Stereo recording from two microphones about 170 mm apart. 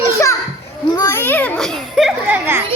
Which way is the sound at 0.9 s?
20° left (ahead or behind).